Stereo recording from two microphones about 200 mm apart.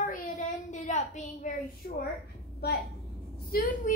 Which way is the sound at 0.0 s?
40° left (ahead or behind).